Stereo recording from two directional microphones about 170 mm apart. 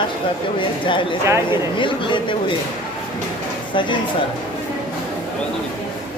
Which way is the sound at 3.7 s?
30° left (ahead or behind).